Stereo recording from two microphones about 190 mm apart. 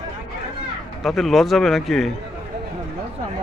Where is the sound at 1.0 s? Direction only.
Centre (ahead or behind).